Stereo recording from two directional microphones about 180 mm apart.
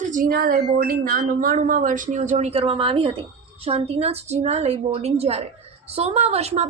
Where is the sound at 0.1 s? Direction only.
55° right (ahead or behind).